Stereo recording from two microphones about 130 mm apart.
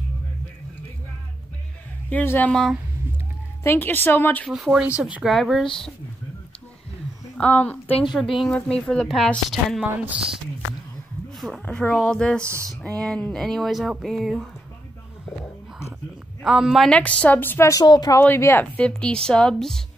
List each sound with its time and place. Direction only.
2.0 s a woman's voice: 15° left (ahead or behind)
4.5 s speech: 5° right (ahead or behind)
7.3 s a woman's voice: 10° left (ahead or behind)
7.9 s speech: 40° left (ahead or behind)
8.2 s speech: centre (ahead or behind)
11.6 s speech: 10° left (ahead or behind)
12.4 s speech: 20° right (ahead or behind)
13.0 s speech: 5° left (ahead or behind)
16.4 s a woman's voice: 5° right (ahead or behind); by 18.2 s 30° left (ahead or behind)
18.2 s a woman's voice: 15° left (ahead or behind)